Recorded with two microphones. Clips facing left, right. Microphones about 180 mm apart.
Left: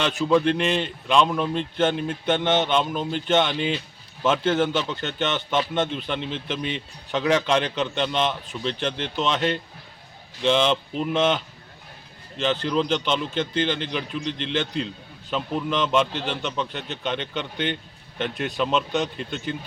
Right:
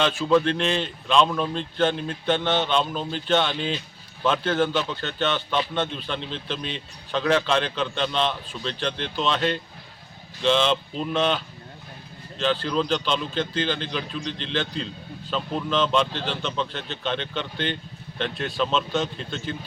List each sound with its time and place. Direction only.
0.0 s a man's voice: 15° left (ahead or behind)